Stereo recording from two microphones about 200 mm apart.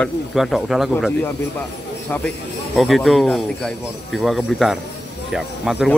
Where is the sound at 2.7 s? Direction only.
Centre (ahead or behind).